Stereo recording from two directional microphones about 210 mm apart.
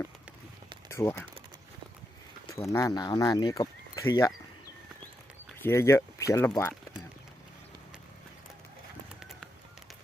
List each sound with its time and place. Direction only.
0.9 s speech: 10° left (ahead or behind)
2.7 s speech: 15° left (ahead or behind)
5.6 s speech: 10° left (ahead or behind)